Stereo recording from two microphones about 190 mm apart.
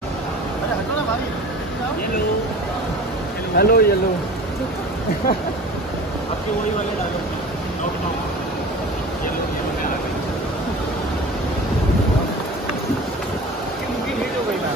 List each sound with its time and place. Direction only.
3.5 s speech: 55° left (ahead or behind)